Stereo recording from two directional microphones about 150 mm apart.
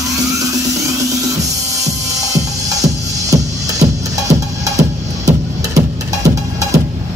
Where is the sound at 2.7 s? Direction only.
25° right (ahead or behind).